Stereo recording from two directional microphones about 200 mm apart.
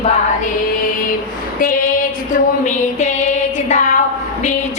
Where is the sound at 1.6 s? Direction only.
45° left (ahead or behind).